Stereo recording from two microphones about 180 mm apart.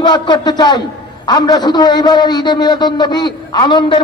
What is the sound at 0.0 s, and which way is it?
A man's voice, 25° left (ahead or behind).